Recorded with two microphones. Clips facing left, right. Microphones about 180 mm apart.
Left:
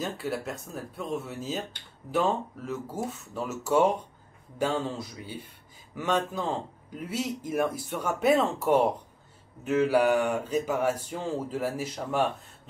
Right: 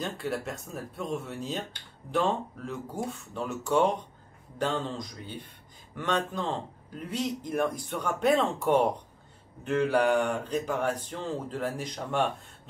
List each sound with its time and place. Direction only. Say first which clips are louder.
0.0 s a man's voice: left 1 dB; centre (ahead or behind)